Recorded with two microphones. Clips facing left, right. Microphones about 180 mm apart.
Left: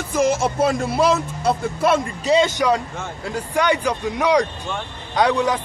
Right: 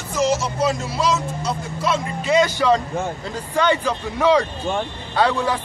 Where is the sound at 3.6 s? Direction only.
15° left (ahead or behind).